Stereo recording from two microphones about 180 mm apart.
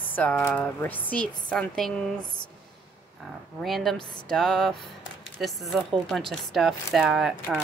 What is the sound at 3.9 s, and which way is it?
Speech, 25° left (ahead or behind).